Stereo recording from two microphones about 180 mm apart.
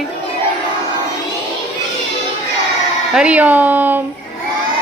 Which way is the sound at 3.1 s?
5° right (ahead or behind).